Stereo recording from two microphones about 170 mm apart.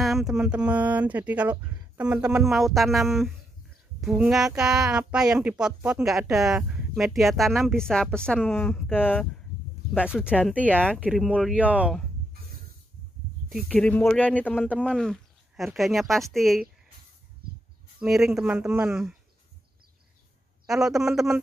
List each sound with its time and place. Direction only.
0.0 s speech: centre (ahead or behind)
9.9 s speech: 5° right (ahead or behind)
13.5 s speech: centre (ahead or behind)
17.4 s a sound: 60° right (ahead or behind)
18.0 s speech: 5° right (ahead or behind)
20.6 s speech: 5° right (ahead or behind)